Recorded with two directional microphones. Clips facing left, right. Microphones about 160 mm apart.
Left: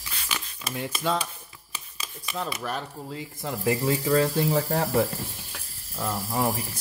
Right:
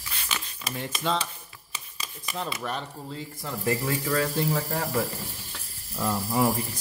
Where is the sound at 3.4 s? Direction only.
15° left (ahead or behind).